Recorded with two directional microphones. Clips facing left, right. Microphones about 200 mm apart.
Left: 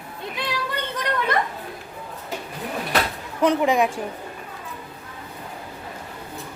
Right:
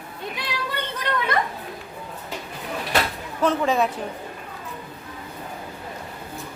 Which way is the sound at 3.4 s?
15° left (ahead or behind).